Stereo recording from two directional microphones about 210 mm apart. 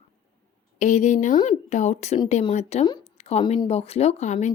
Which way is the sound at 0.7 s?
35° left (ahead or behind).